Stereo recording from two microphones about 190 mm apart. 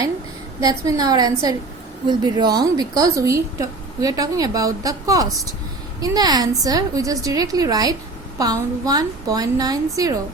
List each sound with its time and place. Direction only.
0.6 s a woman's voice: 20° right (ahead or behind)